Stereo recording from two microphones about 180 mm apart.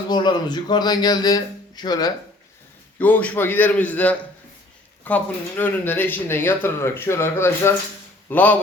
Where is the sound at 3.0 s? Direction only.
10° left (ahead or behind).